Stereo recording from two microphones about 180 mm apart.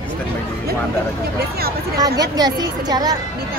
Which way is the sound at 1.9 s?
20° right (ahead or behind).